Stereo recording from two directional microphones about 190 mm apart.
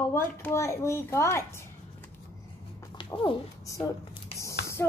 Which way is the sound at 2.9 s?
25° left (ahead or behind).